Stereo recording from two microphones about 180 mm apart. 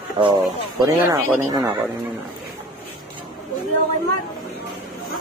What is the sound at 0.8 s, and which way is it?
Speech, 15° right (ahead or behind).